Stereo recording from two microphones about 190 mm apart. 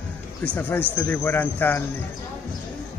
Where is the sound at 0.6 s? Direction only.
10° left (ahead or behind).